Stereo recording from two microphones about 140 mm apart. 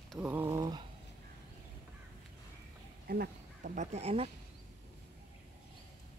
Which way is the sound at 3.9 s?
45° right (ahead or behind).